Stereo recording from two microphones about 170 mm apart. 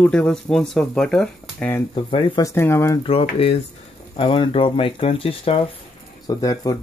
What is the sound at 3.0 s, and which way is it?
Speech, 35° left (ahead or behind).